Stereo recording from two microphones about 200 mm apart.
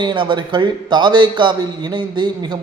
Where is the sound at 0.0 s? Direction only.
25° right (ahead or behind).